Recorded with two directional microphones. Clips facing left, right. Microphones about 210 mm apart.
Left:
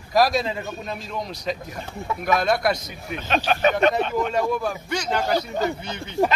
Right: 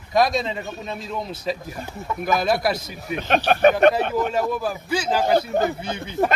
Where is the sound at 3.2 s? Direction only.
50° right (ahead or behind).